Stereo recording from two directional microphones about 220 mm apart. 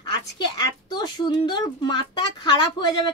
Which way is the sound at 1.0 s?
20° left (ahead or behind).